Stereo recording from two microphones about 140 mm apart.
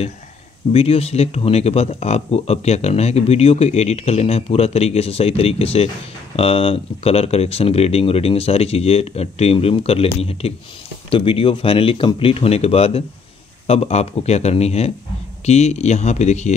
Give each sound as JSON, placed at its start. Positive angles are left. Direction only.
{"t": 0.7, "sound": "speech", "side_deg": 45}